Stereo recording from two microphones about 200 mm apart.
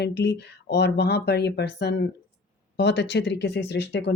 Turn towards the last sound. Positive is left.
turn(degrees=60)  # may be behind; listen again after turning